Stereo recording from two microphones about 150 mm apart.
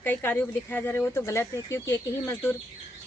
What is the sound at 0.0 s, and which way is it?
Speech, 15° left (ahead or behind).